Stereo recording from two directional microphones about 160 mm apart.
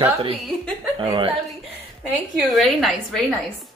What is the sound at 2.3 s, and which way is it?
Speech, centre (ahead or behind).